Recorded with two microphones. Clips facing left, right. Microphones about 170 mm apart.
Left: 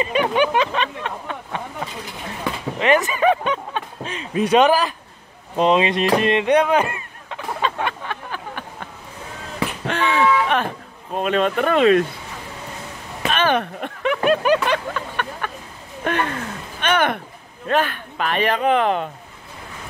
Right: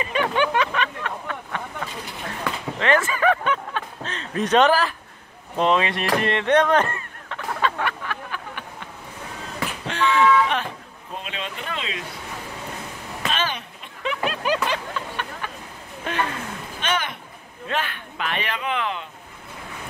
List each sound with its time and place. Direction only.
0.0 s speech: 20° left (ahead or behind)
2.8 s speech: 15° left (ahead or behind)
5.6 s fowl: 20° left (ahead or behind)
9.8 s a sound: 55° left (ahead or behind)
11.1 s speech: 50° left (ahead or behind)
13.3 s a man's voice: 60° left (ahead or behind)
17.6 s speech: 45° left (ahead or behind)